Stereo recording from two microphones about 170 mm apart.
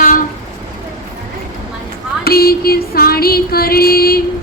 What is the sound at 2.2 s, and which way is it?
Music, 65° left (ahead or behind).